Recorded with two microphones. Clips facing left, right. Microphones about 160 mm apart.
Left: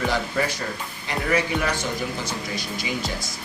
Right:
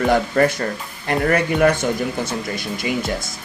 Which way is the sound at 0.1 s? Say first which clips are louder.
Right 8 dB; 55° right (ahead or behind).